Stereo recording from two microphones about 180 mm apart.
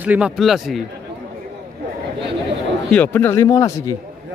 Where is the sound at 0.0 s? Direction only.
5° right (ahead or behind).